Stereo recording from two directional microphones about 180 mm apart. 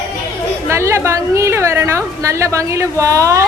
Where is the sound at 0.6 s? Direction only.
15° right (ahead or behind).